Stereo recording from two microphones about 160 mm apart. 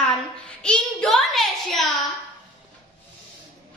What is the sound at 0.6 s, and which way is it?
A child's voice, 5° left (ahead or behind).